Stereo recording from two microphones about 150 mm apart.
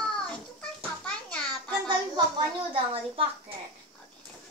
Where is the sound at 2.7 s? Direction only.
40° right (ahead or behind).